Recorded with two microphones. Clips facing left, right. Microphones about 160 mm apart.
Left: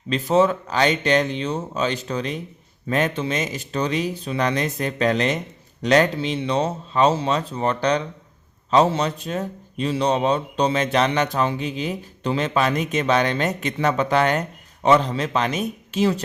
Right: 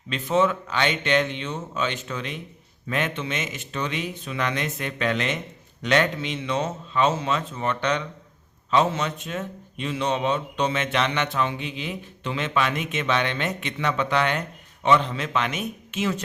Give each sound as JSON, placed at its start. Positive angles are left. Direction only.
{"t": 0.1, "sound": "a man's voice", "side_deg": 35}